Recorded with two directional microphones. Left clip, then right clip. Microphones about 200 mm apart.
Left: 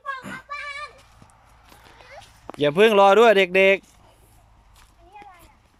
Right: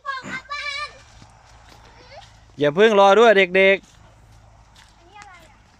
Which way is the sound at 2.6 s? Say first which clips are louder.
Right 1 dB; centre (ahead or behind).